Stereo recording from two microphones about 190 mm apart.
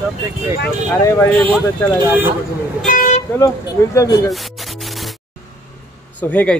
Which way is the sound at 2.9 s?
40° left (ahead or behind).